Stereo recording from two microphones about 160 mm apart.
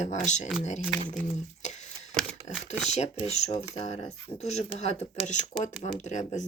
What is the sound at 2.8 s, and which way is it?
Speech, 45° left (ahead or behind).